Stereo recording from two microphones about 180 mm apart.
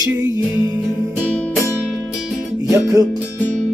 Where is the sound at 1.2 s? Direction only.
5° left (ahead or behind).